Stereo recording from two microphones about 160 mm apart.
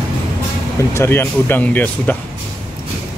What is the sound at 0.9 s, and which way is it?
Speech, 15° left (ahead or behind).